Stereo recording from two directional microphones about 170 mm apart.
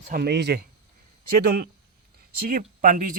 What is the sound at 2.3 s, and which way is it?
Speech, 60° right (ahead or behind).